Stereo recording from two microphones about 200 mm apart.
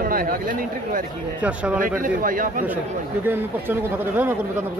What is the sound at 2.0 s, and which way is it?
Speech, 45° right (ahead or behind).